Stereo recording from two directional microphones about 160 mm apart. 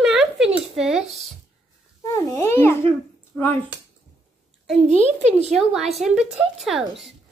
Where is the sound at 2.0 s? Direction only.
20° left (ahead or behind).